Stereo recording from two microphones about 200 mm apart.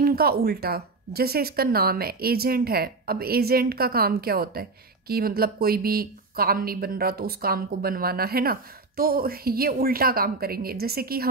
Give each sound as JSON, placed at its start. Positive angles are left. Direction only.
{"t": 0.0, "sound": "speech", "side_deg": -50}